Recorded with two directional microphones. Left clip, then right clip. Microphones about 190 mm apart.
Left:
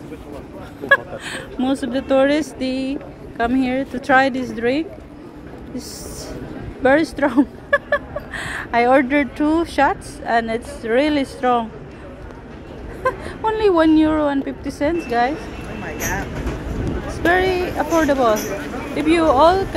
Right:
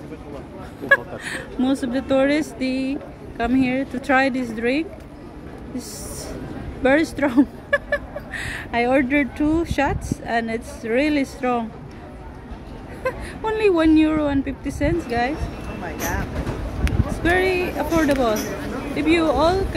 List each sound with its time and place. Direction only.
0.8 s speech: 5° right (ahead or behind)
6.8 s speech: centre (ahead or behind)
13.0 s speech: centre (ahead or behind)
16.8 s speech: 5° right (ahead or behind)